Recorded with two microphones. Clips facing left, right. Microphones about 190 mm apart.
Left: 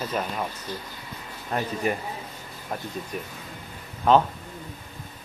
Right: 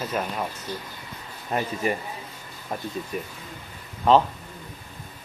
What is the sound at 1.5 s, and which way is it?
Speech, 5° right (ahead or behind).